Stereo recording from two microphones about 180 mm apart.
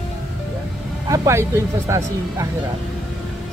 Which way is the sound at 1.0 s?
20° right (ahead or behind).